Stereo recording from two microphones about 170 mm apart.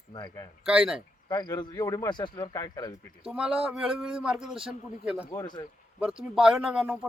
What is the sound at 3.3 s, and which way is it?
Speech, 5° right (ahead or behind).